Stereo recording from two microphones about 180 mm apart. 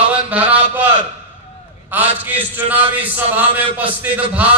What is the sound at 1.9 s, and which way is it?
A man's voice, 10° right (ahead or behind).